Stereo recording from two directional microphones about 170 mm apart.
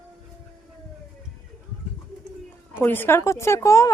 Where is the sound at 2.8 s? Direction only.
10° left (ahead or behind).